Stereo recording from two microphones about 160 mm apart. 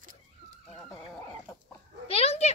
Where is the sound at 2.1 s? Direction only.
40° left (ahead or behind).